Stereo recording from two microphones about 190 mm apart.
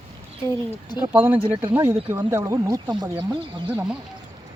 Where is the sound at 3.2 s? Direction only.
25° right (ahead or behind).